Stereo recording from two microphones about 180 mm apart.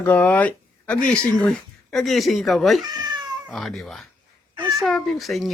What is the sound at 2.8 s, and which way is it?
Cat, 20° right (ahead or behind).